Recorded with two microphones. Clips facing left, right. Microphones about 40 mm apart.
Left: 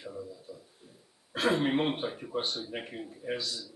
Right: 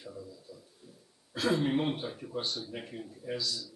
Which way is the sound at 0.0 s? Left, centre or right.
Left.